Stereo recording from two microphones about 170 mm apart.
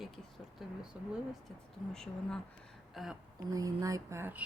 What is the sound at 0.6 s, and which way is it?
Speech, centre (ahead or behind).